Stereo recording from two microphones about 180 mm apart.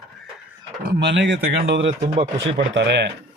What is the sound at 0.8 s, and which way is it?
Speech, 80° right.